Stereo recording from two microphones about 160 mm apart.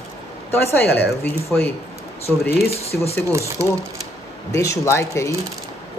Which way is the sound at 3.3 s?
15° right (ahead or behind).